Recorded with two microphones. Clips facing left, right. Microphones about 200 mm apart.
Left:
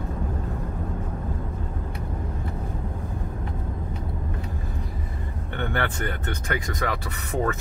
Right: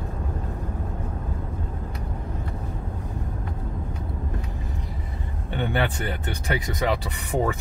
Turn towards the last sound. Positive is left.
turn(degrees=-15)  # may be behind; listen again after turning